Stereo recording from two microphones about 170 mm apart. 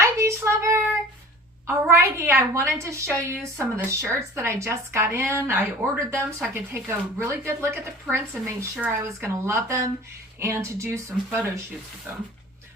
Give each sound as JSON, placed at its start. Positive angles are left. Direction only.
{"t": 0.0, "sound": "child singing", "side_deg": -15}
{"t": 1.6, "sound": "speech", "side_deg": -15}